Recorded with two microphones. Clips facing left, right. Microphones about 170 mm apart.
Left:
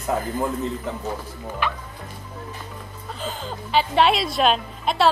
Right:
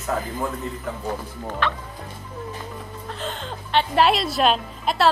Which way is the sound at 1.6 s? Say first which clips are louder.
Right 1 dB; 10° left (ahead or behind).